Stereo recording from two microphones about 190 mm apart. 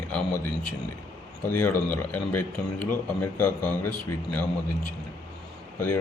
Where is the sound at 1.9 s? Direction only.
10° left (ahead or behind).